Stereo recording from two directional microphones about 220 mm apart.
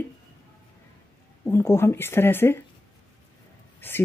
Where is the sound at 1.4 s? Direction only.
10° left (ahead or behind).